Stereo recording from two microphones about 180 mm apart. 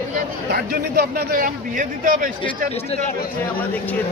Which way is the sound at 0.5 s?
60° right (ahead or behind).